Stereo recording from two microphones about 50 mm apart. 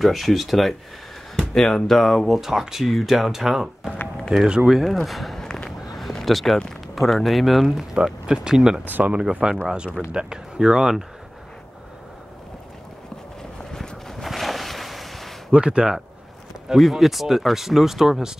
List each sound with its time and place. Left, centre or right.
0.0 s speech: centre
4.4 s speech: centre
4.6 s speech: centre
5.9 s a sound: centre
7.0 s speech: centre
7.9 s speech: centre
8.8 s speech: right
9.3 s speech: centre
13.7 s boat: centre
15.5 s speech: centre
16.6 s speech: centre